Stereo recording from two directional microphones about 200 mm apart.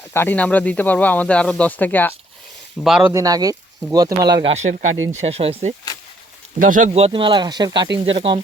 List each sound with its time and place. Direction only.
0.1 s speech: 10° left (ahead or behind)
3.1 s speech: 15° right (ahead or behind)
4.5 s speech: 35° right (ahead or behind)
6.6 s speech: 40° right (ahead or behind)